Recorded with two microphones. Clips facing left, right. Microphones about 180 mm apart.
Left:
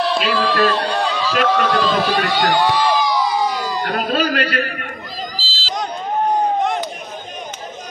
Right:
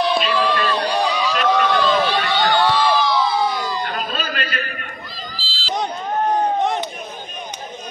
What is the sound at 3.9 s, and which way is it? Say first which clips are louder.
Speech: left 7 dB; 70° left (ahead or behind).